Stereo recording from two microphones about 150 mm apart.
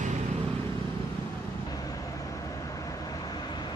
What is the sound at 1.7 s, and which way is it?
Vehicle, 25° left (ahead or behind).